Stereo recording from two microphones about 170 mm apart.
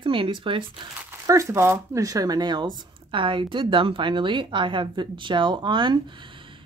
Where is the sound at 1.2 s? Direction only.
20° right (ahead or behind).